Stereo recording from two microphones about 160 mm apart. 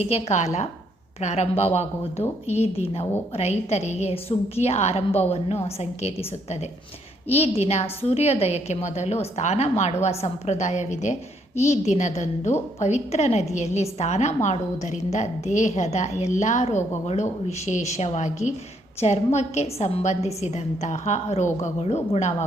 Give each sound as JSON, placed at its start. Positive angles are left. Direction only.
{"t": 0.0, "sound": "a woman's voice", "side_deg": 45}